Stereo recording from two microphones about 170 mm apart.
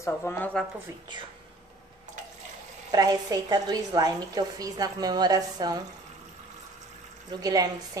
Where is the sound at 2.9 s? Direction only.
20° right (ahead or behind).